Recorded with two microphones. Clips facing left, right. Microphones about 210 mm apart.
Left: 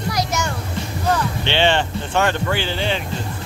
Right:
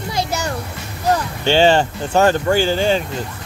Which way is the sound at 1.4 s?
40° right (ahead or behind).